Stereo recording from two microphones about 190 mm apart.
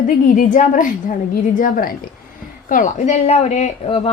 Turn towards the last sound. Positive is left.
turn(degrees=30)  # may be behind; listen again after turning